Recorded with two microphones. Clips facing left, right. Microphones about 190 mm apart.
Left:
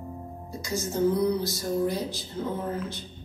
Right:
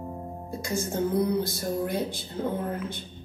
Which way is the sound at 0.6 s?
55° right (ahead or behind).